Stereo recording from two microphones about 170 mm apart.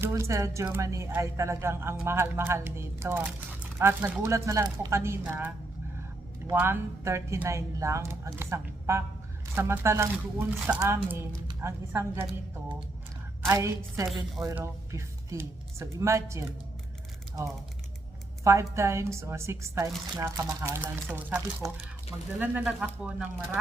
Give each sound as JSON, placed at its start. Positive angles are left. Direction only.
{"t": 0.0, "sound": "a woman's voice", "side_deg": -15}
{"t": 6.5, "sound": "a woman's voice", "side_deg": -15}
{"t": 13.5, "sound": "a woman's voice", "side_deg": -15}
{"t": 18.4, "sound": "a woman's voice", "side_deg": -15}
{"t": 22.4, "sound": "a woman's voice", "side_deg": -5}